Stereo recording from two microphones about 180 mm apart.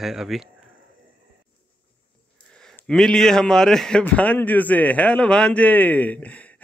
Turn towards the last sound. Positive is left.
turn(degrees=10)  # may be behind; listen again after turning